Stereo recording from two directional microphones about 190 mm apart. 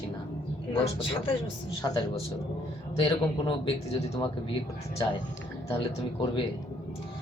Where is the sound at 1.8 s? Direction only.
15° left (ahead or behind).